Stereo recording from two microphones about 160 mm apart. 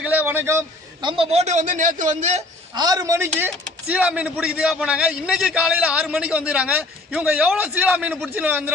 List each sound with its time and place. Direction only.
0.0 s a man's voice: 10° right (ahead or behind)
1.0 s a man's voice: 35° right (ahead or behind)
2.7 s speech: 25° right (ahead or behind)